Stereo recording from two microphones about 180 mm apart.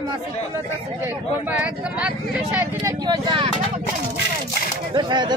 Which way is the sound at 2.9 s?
25° right (ahead or behind).